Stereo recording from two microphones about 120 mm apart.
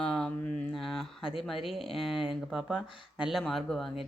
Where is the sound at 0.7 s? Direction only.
Centre (ahead or behind).